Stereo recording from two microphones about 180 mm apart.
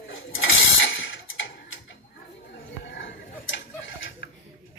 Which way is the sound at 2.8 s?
90° left.